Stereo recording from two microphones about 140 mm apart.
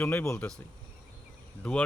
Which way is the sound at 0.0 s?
15° left (ahead or behind).